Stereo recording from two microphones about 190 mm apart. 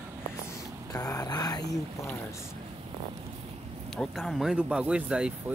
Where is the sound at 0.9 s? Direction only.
20° left (ahead or behind).